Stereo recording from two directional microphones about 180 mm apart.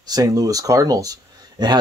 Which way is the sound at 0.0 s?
20° right (ahead or behind).